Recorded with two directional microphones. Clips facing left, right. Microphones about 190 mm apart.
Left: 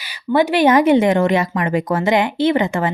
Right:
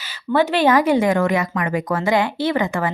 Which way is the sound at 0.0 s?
15° left (ahead or behind).